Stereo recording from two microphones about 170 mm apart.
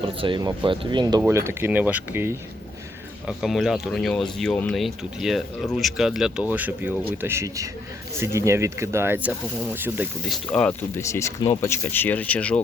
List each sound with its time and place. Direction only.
0.0 s speech: 30° right (ahead or behind)
1.2 s speech: 15° right (ahead or behind)
3.2 s speech: centre (ahead or behind)
10.2 s speech: 5° left (ahead or behind)